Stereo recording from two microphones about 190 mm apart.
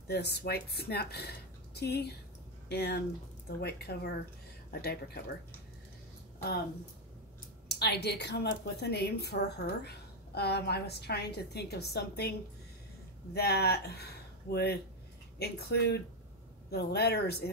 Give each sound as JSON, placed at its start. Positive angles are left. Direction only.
{"t": 0.1, "sound": "a woman's voice", "side_deg": 60}
{"t": 7.6, "sound": "a woman's voice", "side_deg": 60}